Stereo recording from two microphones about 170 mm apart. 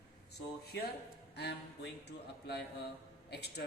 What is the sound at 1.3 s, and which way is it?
A man's voice, 85° left.